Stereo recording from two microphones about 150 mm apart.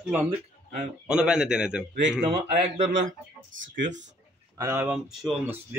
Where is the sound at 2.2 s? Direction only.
50° right (ahead or behind).